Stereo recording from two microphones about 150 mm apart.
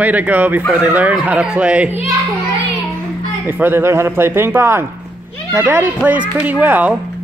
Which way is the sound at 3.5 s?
15° right (ahead or behind).